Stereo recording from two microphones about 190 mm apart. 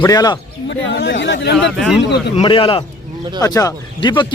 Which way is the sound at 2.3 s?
30° left (ahead or behind).